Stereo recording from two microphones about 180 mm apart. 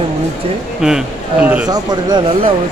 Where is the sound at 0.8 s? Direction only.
5° right (ahead or behind).